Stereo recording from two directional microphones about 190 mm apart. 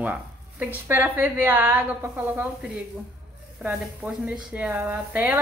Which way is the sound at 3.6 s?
5° right (ahead or behind).